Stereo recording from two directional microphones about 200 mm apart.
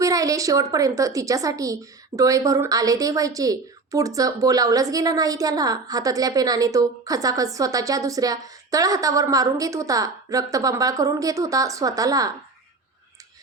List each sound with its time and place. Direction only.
0.0 s a woman's voice: 15° right (ahead or behind)